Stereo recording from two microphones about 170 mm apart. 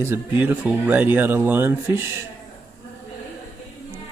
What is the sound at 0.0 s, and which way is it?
Speech, 15° right (ahead or behind).